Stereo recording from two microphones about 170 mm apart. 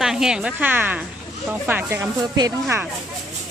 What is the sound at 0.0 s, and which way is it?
A woman's voice, centre (ahead or behind).